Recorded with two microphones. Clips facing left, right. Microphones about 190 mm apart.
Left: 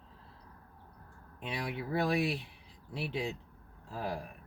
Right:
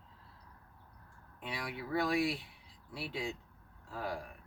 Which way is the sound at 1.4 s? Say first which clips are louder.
Left 4 dB; 25° left (ahead or behind).